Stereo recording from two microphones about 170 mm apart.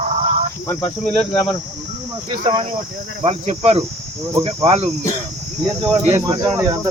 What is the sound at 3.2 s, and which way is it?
Speech, 40° right (ahead or behind).